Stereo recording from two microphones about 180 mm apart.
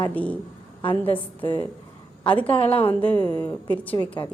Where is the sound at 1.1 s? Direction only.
30° left (ahead or behind).